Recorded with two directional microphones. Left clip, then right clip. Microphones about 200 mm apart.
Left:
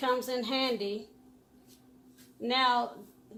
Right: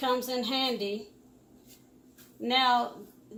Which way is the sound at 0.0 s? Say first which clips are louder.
Right 1 dB; 30° left (ahead or behind).